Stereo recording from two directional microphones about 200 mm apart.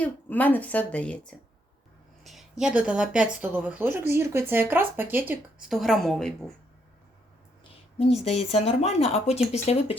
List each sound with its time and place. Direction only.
0.0 s a woman's voice: 10° left (ahead or behind)
2.2 s a woman's voice: centre (ahead or behind)
8.2 s speech: 35° left (ahead or behind)